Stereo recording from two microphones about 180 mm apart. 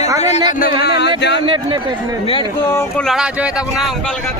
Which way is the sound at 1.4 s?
30° right (ahead or behind).